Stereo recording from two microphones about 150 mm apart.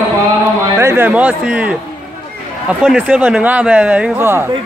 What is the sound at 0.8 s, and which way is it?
Speech, 15° right (ahead or behind).